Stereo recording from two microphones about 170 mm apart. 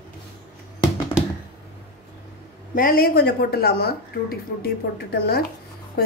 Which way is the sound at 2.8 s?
60° left (ahead or behind).